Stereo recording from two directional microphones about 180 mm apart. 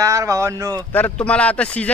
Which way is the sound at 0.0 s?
15° right (ahead or behind).